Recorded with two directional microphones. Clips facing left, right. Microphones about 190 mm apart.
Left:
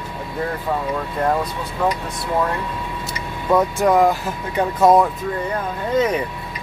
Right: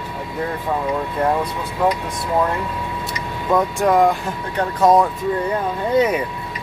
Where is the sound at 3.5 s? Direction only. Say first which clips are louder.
Left 1 dB; centre (ahead or behind).